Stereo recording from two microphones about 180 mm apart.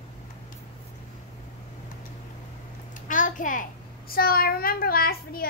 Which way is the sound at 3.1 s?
45° left (ahead or behind).